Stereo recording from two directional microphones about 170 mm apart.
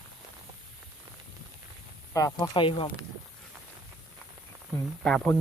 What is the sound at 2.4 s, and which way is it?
Speech, 25° left (ahead or behind).